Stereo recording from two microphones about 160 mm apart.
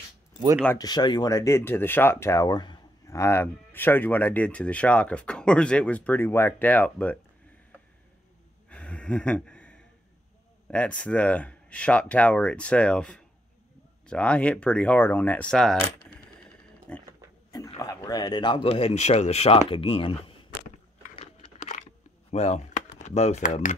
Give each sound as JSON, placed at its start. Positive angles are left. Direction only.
{"t": 0.7, "sound": "speech", "side_deg": 25}
{"t": 8.6, "sound": "a sound", "side_deg": 10}
{"t": 10.7, "sound": "speech", "side_deg": 5}
{"t": 16.9, "sound": "speech", "side_deg": 5}
{"t": 17.7, "sound": "speech", "side_deg": 25}
{"t": 22.3, "sound": "a sound", "side_deg": 45}
{"t": 22.9, "sound": "speech", "side_deg": 45}